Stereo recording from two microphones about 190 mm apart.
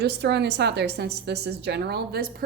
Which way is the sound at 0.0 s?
60° right (ahead or behind).